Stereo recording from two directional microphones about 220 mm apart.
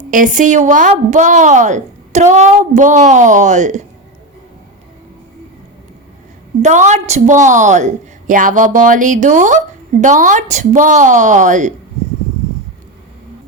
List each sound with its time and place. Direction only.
0.1 s a woman's voice: 35° right (ahead or behind)
6.6 s a woman's voice: 35° right (ahead or behind)